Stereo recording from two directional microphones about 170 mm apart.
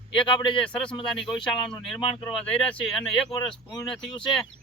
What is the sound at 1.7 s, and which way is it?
Speech, 25° left (ahead or behind).